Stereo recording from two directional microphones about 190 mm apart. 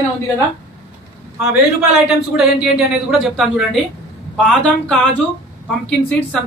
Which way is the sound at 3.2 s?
Centre (ahead or behind).